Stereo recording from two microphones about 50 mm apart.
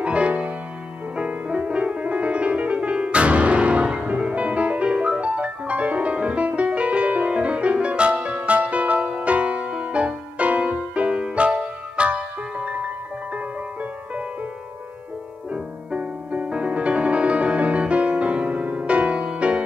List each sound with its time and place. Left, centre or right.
0.0 s music: right
15.5 s music: right